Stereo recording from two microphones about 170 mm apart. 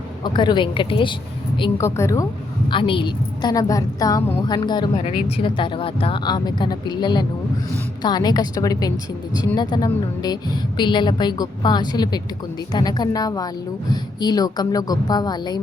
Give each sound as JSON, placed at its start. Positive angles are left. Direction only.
{"t": 0.3, "sound": "a woman's voice", "side_deg": 25}
{"t": 1.8, "sound": "a woman's voice", "side_deg": 15}
{"t": 2.6, "sound": "a woman's voice", "side_deg": 30}